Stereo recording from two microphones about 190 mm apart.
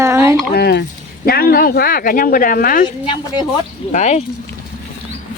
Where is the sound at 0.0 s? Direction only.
15° right (ahead or behind).